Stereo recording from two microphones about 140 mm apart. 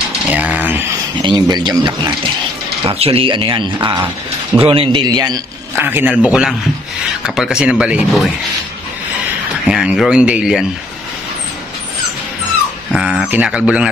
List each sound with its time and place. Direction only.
0.3 s a sound: 10° right (ahead or behind)
1.1 s speech: 30° right (ahead or behind)
5.8 s a man's voice: 15° right (ahead or behind)
9.7 s speech: 5° right (ahead or behind)
12.9 s speech: 5° right (ahead or behind)